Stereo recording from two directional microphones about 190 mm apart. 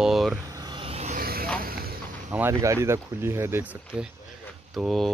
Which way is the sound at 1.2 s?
50° right (ahead or behind).